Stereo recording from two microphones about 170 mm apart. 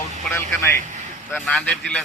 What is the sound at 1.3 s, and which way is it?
Speech, 5° left (ahead or behind).